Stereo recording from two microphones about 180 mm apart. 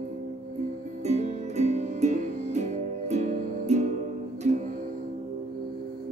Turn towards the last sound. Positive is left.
turn(degrees=-40)  # may be behind; listen again after turning